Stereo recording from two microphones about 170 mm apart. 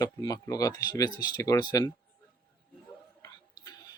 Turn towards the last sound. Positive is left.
turn(degrees=20)  # may be behind; listen again after turning